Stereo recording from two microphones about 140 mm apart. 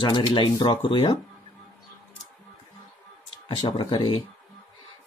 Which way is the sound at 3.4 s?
35° left (ahead or behind).